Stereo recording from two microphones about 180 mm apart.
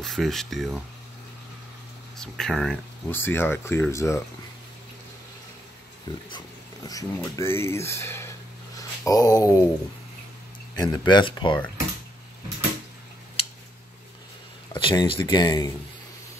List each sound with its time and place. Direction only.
0.0 s speech: centre (ahead or behind)
2.1 s speech: 5° left (ahead or behind)
6.3 s speech: 20° left (ahead or behind)
8.7 s a sound: 20° left (ahead or behind)
10.8 s speech: 25° left (ahead or behind)
14.7 s speech: 25° left (ahead or behind)